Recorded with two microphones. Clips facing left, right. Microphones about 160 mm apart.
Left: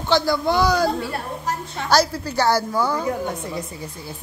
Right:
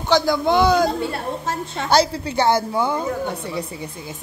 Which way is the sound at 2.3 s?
25° right (ahead or behind).